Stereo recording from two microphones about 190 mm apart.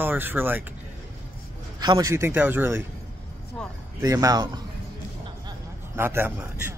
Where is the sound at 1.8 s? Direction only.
20° right (ahead or behind).